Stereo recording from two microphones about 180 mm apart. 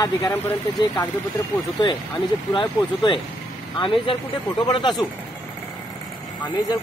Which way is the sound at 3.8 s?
25° left (ahead or behind).